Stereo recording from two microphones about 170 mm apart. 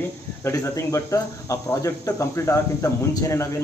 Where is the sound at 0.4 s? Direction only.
15° left (ahead or behind).